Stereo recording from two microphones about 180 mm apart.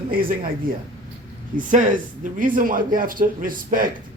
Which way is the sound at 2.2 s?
50° right (ahead or behind).